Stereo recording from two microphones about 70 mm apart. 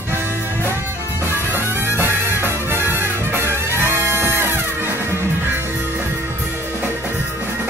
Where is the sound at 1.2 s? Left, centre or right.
Right.